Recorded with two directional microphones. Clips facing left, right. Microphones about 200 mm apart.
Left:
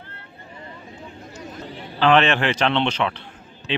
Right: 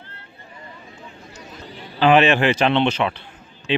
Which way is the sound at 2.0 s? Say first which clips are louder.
Right 2 dB; 10° right (ahead or behind).